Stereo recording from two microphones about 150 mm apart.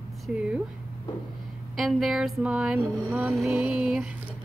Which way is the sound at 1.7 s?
Centre (ahead or behind).